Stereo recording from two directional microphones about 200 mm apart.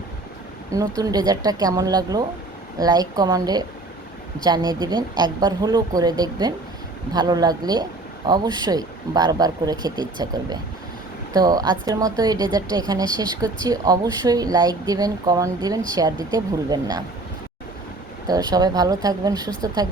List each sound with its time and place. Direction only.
0.7 s speech: 15° right (ahead or behind)
18.3 s speech: 20° right (ahead or behind)